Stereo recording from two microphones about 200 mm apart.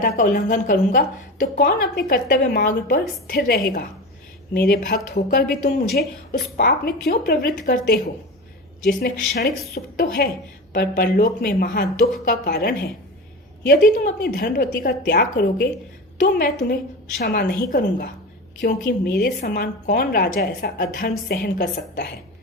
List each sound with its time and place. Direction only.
0.0 s a woman's voice: 45° left (ahead or behind)
8.9 s a woman's voice: 50° left (ahead or behind)